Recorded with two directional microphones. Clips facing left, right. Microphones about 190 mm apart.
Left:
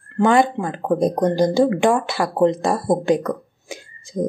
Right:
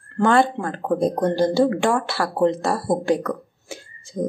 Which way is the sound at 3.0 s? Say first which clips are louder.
Left 2 dB; 15° left (ahead or behind).